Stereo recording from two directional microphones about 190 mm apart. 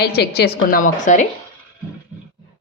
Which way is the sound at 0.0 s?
60° left (ahead or behind).